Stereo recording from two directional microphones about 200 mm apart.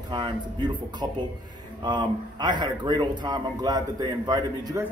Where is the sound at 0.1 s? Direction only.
25° right (ahead or behind).